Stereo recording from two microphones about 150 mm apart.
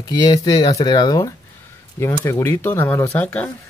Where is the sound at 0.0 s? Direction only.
25° left (ahead or behind).